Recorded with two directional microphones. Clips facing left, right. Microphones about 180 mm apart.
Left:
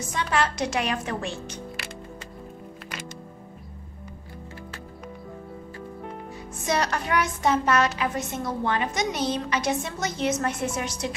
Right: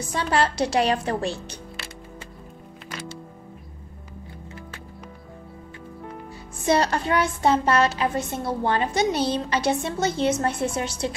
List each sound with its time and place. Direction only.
0.1 s a woman's voice: 35° right (ahead or behind)
6.6 s a woman's voice: 30° right (ahead or behind)